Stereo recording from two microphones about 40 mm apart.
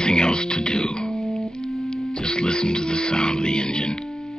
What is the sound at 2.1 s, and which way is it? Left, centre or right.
Speech, left.